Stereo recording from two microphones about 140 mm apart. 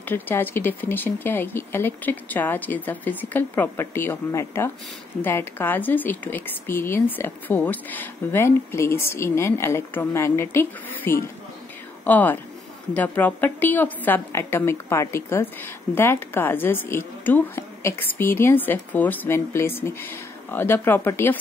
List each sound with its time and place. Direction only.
0.1 s a woman's voice: 15° left (ahead or behind)